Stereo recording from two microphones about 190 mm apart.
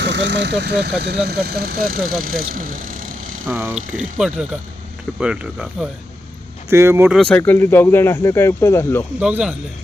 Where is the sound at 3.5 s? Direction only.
15° right (ahead or behind).